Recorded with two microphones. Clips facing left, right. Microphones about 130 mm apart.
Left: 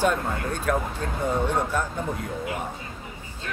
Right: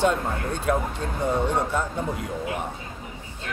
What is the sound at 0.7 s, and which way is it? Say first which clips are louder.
Speech: right 1 dB; 20° right (ahead or behind).